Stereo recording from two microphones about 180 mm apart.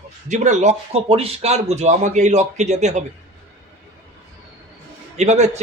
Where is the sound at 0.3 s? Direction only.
40° right (ahead or behind).